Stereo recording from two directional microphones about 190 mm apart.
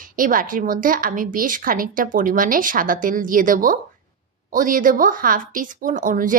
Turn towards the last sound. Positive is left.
turn(degrees=-45)  # may be behind; listen again after turning